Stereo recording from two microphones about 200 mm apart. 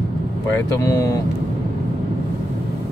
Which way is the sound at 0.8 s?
15° left (ahead or behind).